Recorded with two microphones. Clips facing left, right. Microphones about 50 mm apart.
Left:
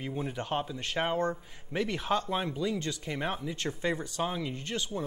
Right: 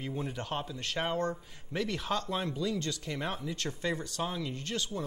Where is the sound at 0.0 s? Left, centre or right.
Centre.